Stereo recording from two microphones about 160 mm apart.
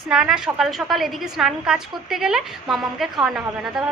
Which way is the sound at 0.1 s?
5° right (ahead or behind).